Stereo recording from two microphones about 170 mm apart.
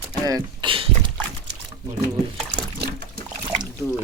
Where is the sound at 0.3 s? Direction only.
25° right (ahead or behind).